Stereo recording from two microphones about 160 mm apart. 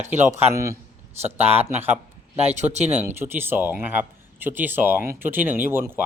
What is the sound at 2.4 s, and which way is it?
Speech, 45° right (ahead or behind).